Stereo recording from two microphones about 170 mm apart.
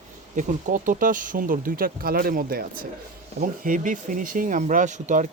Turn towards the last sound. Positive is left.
turn(degrees=-45)  # may be behind; listen again after turning